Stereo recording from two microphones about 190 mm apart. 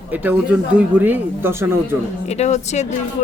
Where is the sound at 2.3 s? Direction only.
35° left (ahead or behind).